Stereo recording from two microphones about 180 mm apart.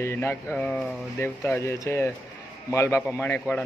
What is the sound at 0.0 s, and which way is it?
Speech, 15° left (ahead or behind).